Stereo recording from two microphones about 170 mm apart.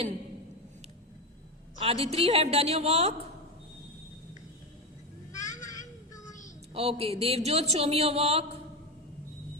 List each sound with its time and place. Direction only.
1.8 s a woman's voice: 35° right (ahead or behind)
5.3 s vehicle: 20° left (ahead or behind)
6.7 s speech: 35° right (ahead or behind)